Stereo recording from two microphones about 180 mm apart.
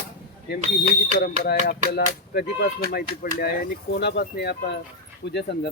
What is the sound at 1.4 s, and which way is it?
Speech, 60° left (ahead or behind).